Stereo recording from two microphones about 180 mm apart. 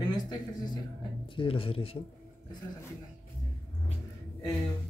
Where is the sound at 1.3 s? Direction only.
30° left (ahead or behind).